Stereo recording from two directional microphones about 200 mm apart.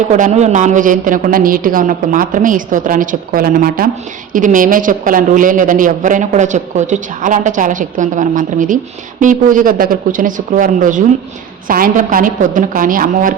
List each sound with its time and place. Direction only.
0.1 s a woman's voice: 35° right (ahead or behind)